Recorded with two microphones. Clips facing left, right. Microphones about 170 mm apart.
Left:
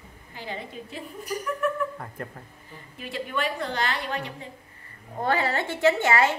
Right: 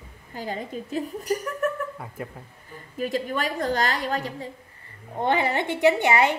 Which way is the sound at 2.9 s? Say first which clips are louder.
Right 4 dB; 40° right (ahead or behind).